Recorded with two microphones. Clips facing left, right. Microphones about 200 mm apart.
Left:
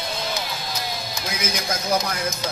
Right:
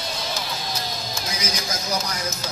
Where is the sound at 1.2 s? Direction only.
55° left (ahead or behind).